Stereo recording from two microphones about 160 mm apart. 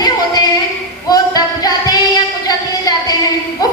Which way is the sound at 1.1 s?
25° left (ahead or behind).